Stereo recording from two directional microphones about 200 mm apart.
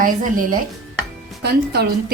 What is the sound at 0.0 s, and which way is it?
Speech, 45° right (ahead or behind).